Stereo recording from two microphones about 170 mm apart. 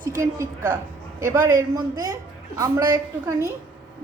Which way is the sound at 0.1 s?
15° right (ahead or behind).